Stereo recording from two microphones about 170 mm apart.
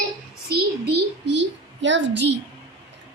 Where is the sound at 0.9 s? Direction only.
80° right.